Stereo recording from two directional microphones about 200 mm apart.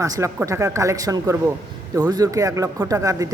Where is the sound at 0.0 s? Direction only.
15° right (ahead or behind).